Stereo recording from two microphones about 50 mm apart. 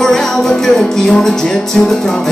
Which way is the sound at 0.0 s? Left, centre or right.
Centre.